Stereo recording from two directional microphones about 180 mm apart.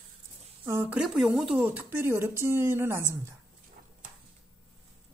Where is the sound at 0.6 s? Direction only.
10° right (ahead or behind).